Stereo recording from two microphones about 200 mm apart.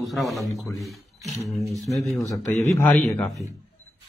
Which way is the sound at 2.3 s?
10° left (ahead or behind).